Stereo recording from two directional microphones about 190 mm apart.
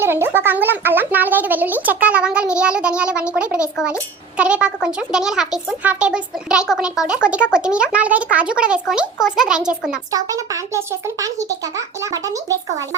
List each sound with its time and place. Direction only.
0.0 s speech: 10° right (ahead or behind)
10.1 s speech: 20° right (ahead or behind)